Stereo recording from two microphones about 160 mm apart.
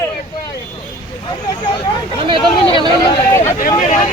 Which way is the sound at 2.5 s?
30° left (ahead or behind).